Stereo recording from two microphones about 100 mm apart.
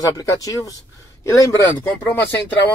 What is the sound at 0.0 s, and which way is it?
A man's voice, 35° left (ahead or behind).